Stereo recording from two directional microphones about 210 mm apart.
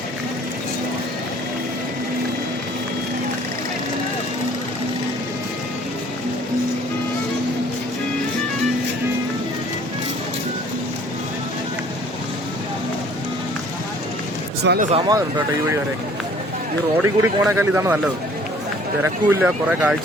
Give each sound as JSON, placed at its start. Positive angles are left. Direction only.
{"t": 14.6, "sound": "speech", "side_deg": -50}
{"t": 14.9, "sound": "speech", "side_deg": -20}
{"t": 17.0, "sound": "speech", "side_deg": -10}
{"t": 19.0, "sound": "speech", "side_deg": -10}